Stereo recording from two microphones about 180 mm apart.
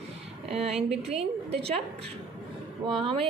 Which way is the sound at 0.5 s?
35° right (ahead or behind).